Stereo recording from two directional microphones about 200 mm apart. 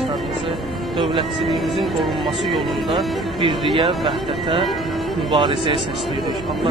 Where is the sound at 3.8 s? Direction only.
25° right (ahead or behind).